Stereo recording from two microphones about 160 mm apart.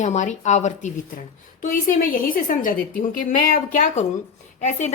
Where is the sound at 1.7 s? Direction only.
60° left (ahead or behind).